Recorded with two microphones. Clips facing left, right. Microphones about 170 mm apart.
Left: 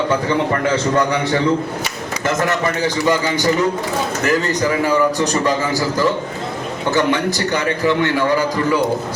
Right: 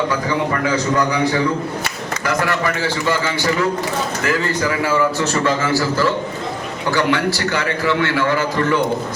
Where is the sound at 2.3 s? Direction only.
20° left (ahead or behind).